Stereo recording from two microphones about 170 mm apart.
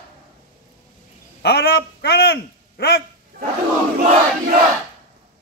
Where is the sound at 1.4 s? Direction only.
70° left (ahead or behind).